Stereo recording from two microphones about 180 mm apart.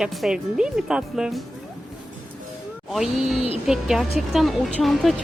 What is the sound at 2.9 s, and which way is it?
Speech, centre (ahead or behind).